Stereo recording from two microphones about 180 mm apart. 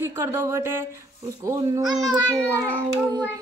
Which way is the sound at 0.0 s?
15° right (ahead or behind).